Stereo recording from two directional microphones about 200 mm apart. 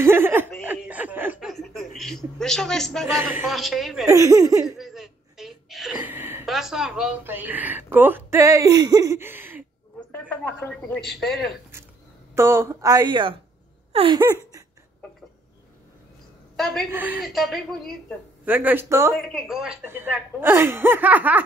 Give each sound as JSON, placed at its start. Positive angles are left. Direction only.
{"t": 0.0, "sound": "chuckle", "side_deg": -10}
{"t": 0.7, "sound": "snicker", "side_deg": -10}
{"t": 2.0, "sound": "a man's voice", "side_deg": 0}
{"t": 4.1, "sound": "speech", "side_deg": -15}
{"t": 4.6, "sound": "a sound", "side_deg": 0}
{"t": 10.3, "sound": "a man's voice", "side_deg": 5}
{"t": 12.4, "sound": "speech", "side_deg": -15}
{"t": 13.9, "sound": "a sound", "side_deg": -25}
{"t": 16.5, "sound": "a woman's voice", "side_deg": 0}
{"t": 19.1, "sound": "speech", "side_deg": 0}